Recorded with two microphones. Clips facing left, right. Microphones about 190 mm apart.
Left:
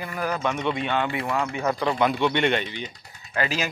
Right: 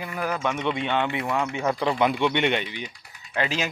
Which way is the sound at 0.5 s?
20° right (ahead or behind).